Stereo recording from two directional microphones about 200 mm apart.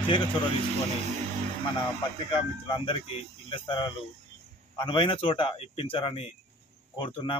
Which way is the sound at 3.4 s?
25° left (ahead or behind).